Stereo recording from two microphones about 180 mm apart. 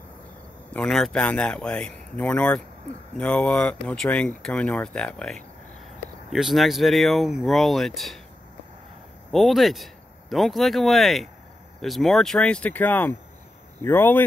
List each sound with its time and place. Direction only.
0.7 s speech: centre (ahead or behind)
9.3 s speech: centre (ahead or behind)